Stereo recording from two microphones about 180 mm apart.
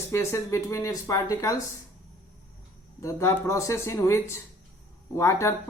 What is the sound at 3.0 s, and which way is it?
Speech, 15° left (ahead or behind).